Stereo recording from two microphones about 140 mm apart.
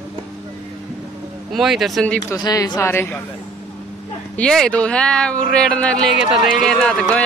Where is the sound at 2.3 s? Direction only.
25° left (ahead or behind).